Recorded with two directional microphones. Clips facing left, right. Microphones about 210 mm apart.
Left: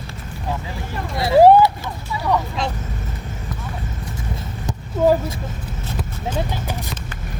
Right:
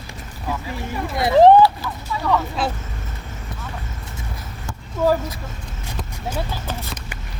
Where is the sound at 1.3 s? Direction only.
10° left (ahead or behind).